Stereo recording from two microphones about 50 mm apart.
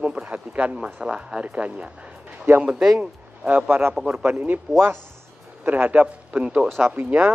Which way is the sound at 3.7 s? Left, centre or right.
Right.